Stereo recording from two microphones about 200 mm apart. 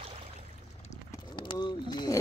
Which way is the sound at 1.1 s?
20° left (ahead or behind).